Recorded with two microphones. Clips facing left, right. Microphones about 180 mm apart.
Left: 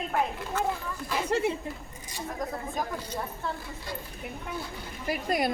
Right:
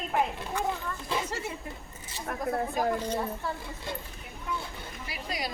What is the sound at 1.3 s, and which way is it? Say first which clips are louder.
Speech: left 9 dB; 60° left (ahead or behind).